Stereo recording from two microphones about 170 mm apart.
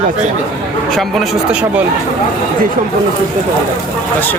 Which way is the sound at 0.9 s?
Centre (ahead or behind).